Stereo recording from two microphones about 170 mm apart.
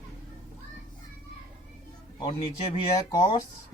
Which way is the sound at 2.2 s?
30° left (ahead or behind).